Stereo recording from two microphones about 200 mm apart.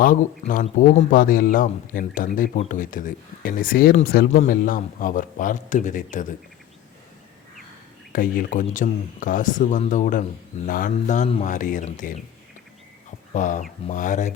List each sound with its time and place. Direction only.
0.0 s speech: 40° left (ahead or behind)
8.1 s speech: 45° left (ahead or behind)
13.3 s speech: 40° left (ahead or behind)